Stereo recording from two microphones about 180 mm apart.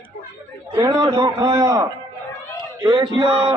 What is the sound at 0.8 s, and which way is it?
A man's voice, 20° right (ahead or behind).